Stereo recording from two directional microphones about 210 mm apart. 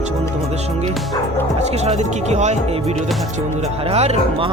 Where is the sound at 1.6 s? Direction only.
30° right (ahead or behind).